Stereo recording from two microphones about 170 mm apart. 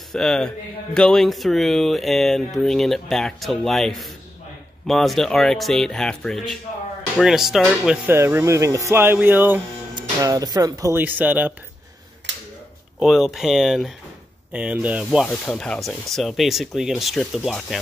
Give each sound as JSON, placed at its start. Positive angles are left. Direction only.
{"t": 0.1, "sound": "speech", "side_deg": 0}
{"t": 7.2, "sound": "music", "side_deg": 0}
{"t": 9.9, "sound": "music", "side_deg": -20}
{"t": 13.0, "sound": "speech", "side_deg": 0}
{"t": 14.5, "sound": "music", "side_deg": -10}
{"t": 15.4, "sound": "speech", "side_deg": 5}